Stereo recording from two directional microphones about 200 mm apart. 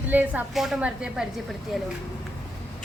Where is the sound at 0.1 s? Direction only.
10° right (ahead or behind).